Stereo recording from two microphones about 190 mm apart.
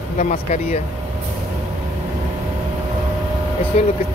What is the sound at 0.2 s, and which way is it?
Speech, 40° left (ahead or behind).